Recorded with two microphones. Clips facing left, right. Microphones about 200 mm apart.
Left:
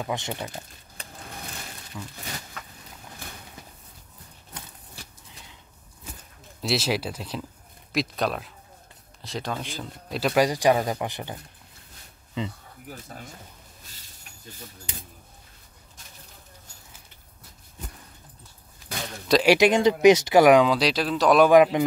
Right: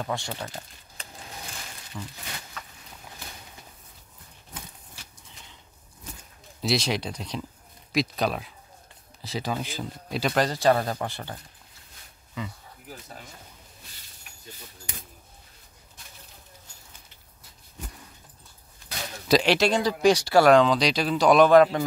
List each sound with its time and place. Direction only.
0.0 s speech: 20° left (ahead or behind)
1.9 s speech: centre (ahead or behind)
6.6 s speech: 5° left (ahead or behind)
10.4 s speech: 15° left (ahead or behind)
19.4 s speech: 15° left (ahead or behind)
21.5 s speech: 15° left (ahead or behind)